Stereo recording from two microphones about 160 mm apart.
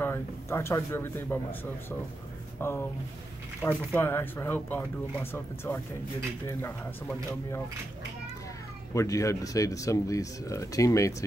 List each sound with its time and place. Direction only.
0.0 s speech: 15° left (ahead or behind)
8.9 s speech: 20° left (ahead or behind)